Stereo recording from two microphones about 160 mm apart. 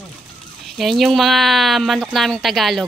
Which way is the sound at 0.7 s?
Centre (ahead or behind).